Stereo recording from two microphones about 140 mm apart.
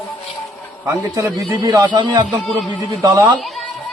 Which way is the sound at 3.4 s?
Centre (ahead or behind).